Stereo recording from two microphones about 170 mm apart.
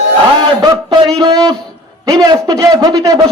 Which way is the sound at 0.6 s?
25° right (ahead or behind).